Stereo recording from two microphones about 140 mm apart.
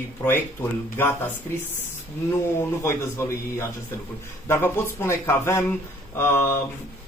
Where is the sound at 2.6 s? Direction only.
20° left (ahead or behind).